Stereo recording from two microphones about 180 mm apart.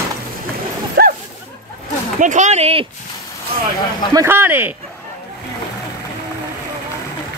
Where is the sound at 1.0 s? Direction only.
60° right (ahead or behind).